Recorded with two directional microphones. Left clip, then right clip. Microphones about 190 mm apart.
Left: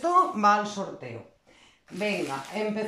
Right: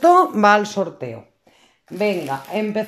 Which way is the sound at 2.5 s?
60° right (ahead or behind).